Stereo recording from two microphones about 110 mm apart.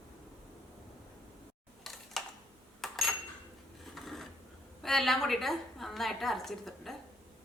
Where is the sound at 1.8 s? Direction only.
Centre (ahead or behind).